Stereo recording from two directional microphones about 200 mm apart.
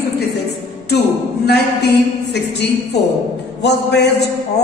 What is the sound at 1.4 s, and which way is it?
Speech, 55° left (ahead or behind).